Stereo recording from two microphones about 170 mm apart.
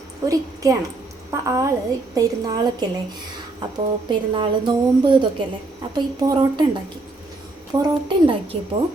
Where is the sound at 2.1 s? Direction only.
20° right (ahead or behind).